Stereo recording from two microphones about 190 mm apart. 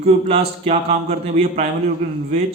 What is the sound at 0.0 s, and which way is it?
Speech, 30° right (ahead or behind).